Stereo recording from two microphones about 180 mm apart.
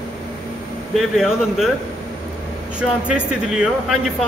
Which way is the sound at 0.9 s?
Centre (ahead or behind).